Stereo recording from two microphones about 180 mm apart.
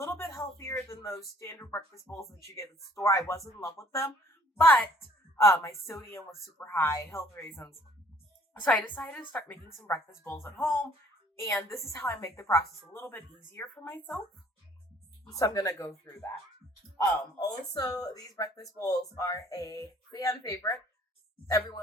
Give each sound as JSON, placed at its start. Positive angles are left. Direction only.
{"t": 0.0, "sound": "a woman's voice", "side_deg": 15}
{"t": 15.3, "sound": "speech", "side_deg": 20}
{"t": 17.4, "sound": "speech", "side_deg": 20}